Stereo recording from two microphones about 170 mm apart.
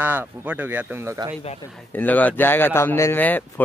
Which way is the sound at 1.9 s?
10° left (ahead or behind).